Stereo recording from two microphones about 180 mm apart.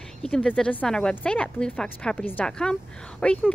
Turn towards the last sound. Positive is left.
turn(degrees=5)  # may be behind; listen again after turning